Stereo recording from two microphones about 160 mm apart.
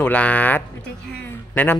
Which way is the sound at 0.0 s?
10° left (ahead or behind).